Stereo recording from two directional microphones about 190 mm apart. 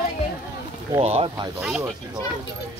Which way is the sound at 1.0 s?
30° right (ahead or behind).